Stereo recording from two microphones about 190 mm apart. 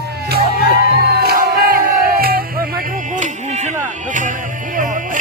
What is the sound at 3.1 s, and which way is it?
Music, 40° right (ahead or behind).